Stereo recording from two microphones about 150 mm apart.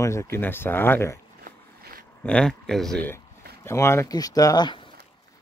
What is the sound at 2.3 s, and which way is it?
Speech, 5° left (ahead or behind).